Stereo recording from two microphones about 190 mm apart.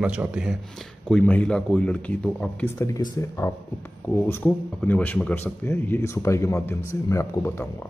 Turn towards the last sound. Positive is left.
turn(degrees=10)  # may be behind; listen again after turning